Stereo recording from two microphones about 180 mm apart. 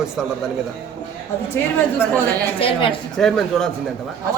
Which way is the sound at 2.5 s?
30° left (ahead or behind).